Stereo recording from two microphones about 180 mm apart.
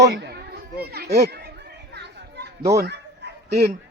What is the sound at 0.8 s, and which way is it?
Speech, 60° right (ahead or behind).